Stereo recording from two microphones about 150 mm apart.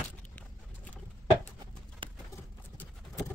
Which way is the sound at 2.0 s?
35° right (ahead or behind).